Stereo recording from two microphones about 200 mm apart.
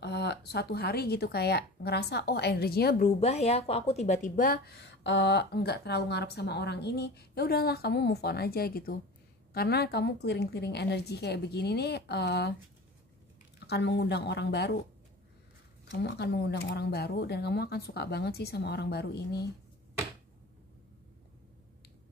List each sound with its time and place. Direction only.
0.0 s speech: 55° left (ahead or behind)
3.2 s a woman's voice: 30° left (ahead or behind); by 12.5 s 55° left (ahead or behind)
13.7 s a woman's voice: 60° left (ahead or behind)
15.9 s speech: 60° left (ahead or behind)